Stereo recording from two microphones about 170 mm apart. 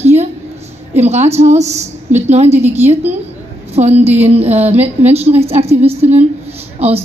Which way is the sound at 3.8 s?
40° right (ahead or behind).